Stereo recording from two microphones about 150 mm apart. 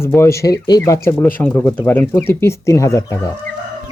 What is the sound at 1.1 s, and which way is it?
Speech, 10° left (ahead or behind).